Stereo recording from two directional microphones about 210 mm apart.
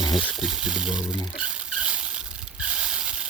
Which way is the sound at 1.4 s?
5° right (ahead or behind).